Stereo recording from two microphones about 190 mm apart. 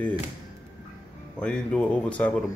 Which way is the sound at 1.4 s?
5° left (ahead or behind).